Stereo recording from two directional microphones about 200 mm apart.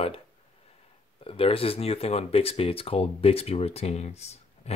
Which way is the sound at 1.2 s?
25° left (ahead or behind).